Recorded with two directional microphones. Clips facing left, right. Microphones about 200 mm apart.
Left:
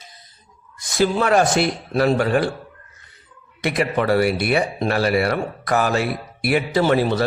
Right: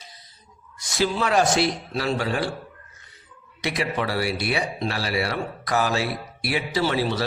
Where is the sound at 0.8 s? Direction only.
55° left (ahead or behind).